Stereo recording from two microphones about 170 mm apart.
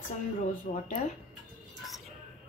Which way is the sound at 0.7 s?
40° left (ahead or behind).